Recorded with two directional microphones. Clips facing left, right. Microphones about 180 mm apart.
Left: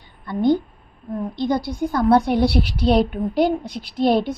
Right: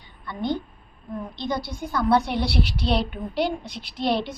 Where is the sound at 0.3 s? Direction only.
50° left (ahead or behind).